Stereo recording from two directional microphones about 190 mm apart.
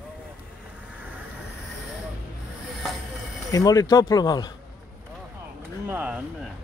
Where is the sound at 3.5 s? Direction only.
20° left (ahead or behind).